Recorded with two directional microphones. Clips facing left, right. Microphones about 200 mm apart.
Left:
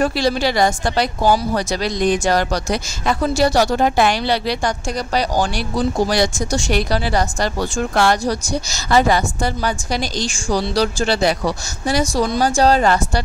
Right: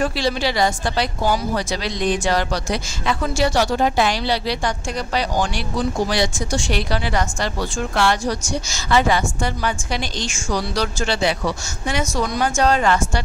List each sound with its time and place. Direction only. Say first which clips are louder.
0.0 s speech: left 3 dB; 45° left (ahead or behind)